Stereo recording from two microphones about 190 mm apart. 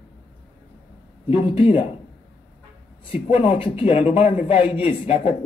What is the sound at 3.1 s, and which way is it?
Speech, 30° left (ahead or behind).